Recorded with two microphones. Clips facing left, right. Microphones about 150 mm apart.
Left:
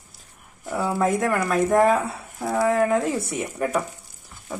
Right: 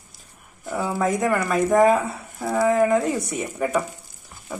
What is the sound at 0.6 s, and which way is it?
Speech, 5° left (ahead or behind).